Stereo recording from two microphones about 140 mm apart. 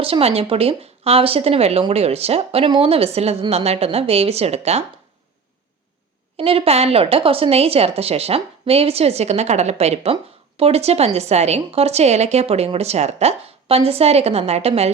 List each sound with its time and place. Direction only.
0.0 s a woman's voice: 45° right (ahead or behind)
6.3 s a woman's voice: 45° right (ahead or behind)